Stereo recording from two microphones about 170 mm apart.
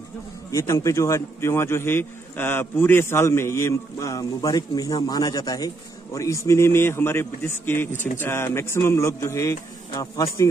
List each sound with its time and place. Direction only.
0.5 s a man's voice: 20° left (ahead or behind)